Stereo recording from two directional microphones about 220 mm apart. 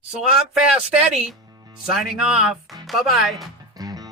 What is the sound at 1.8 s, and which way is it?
Speech, centre (ahead or behind).